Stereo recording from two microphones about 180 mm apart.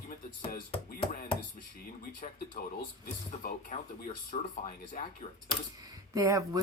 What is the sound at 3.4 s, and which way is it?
Speech, 50° left (ahead or behind).